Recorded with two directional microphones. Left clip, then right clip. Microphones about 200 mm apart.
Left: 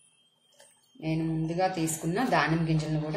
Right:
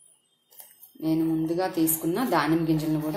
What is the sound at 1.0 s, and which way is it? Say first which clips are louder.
A woman's voice: right 7 dB; 25° right (ahead or behind).